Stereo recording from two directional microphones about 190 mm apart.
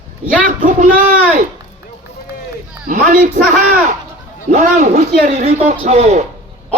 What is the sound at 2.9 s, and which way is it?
Speech, 45° right (ahead or behind).